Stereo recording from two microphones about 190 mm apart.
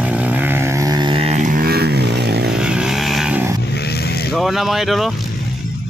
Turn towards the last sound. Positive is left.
turn(degrees=0)  # may be behind; listen again after turning